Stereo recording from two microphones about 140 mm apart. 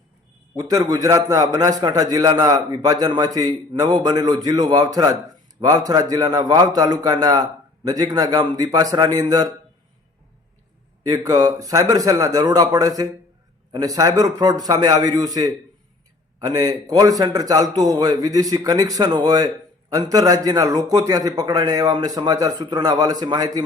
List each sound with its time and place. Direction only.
0.5 s a man's voice: 25° right (ahead or behind)
11.0 s a man's voice: 25° right (ahead or behind)